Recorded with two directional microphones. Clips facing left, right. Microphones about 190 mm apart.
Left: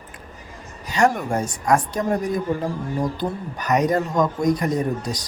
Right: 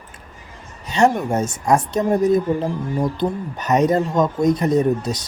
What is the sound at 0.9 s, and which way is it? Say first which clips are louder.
Speech: right 3 dB; 25° right (ahead or behind).